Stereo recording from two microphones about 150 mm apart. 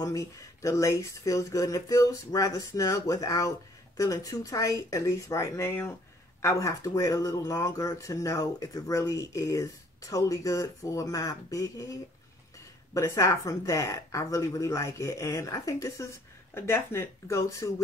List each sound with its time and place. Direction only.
0.0 s speech: 20° left (ahead or behind)